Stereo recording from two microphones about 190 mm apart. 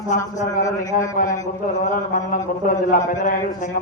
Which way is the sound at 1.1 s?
45° left (ahead or behind).